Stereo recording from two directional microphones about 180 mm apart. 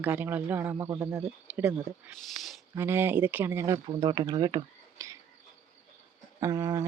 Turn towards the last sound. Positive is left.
turn(degrees=-20)  # may be behind; listen again after turning